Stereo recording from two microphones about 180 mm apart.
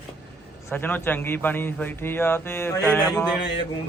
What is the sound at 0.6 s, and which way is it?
A man's voice, 10° left (ahead or behind).